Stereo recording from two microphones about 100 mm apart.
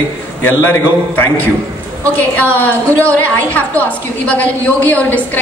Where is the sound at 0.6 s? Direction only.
20° left (ahead or behind).